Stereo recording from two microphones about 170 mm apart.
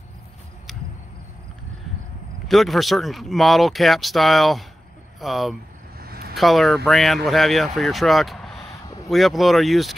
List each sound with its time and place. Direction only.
2.4 s speech: centre (ahead or behind)
5.9 s vehicle: 65° right (ahead or behind)
6.3 s speech: centre (ahead or behind)